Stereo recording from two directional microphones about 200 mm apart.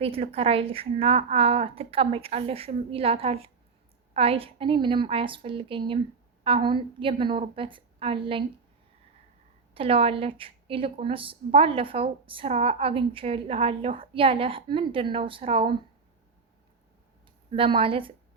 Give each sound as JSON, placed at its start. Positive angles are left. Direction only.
{"t": 0.0, "sound": "a woman's voice", "side_deg": -30}
{"t": 9.7, "sound": "a woman's voice", "side_deg": -30}
{"t": 17.5, "sound": "a woman's voice", "side_deg": -25}